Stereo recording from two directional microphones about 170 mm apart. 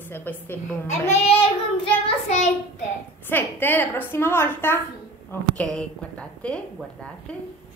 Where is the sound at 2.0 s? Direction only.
45° left (ahead or behind).